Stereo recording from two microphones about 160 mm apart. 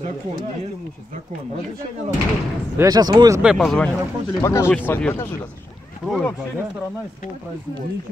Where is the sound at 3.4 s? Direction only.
Centre (ahead or behind).